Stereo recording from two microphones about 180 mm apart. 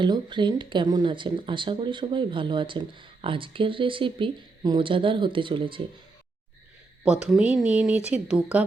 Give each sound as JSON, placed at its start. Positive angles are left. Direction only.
{"t": 0.0, "sound": "speech", "side_deg": -25}
{"t": 7.0, "sound": "speech", "side_deg": -5}